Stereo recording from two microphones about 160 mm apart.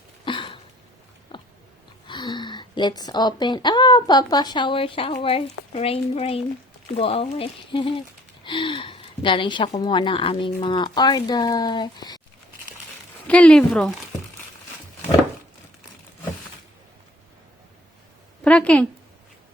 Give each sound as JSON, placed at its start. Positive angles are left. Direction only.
{"t": 0.3, "sound": "a sound", "side_deg": 30}
{"t": 1.3, "sound": "biting", "side_deg": 30}
{"t": 2.0, "sound": "speech", "side_deg": 25}
{"t": 13.2, "sound": "speech", "side_deg": 5}
{"t": 18.4, "sound": "speech", "side_deg": 10}